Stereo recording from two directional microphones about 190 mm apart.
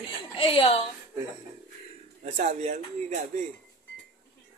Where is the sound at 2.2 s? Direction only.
40° right (ahead or behind).